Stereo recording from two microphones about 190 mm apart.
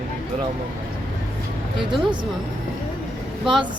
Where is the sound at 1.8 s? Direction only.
25° right (ahead or behind).